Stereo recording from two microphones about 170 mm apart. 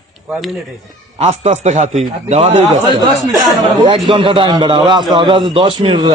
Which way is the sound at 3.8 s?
30° right (ahead or behind).